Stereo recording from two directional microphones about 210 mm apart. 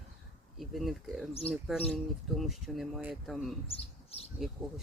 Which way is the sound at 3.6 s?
25° left (ahead or behind).